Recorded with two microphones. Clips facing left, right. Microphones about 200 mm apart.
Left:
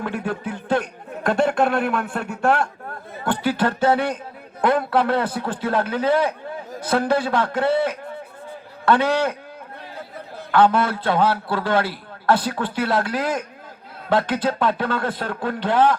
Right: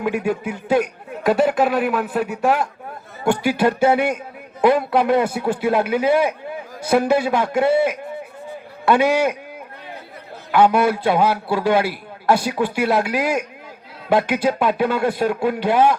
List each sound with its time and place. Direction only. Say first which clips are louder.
0.0 s a man's voice: right 5 dB; 10° right (ahead or behind)
10.5 s a man's voice: right 2 dB; 10° right (ahead or behind)